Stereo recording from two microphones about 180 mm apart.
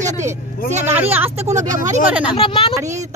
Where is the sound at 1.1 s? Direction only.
10° right (ahead or behind).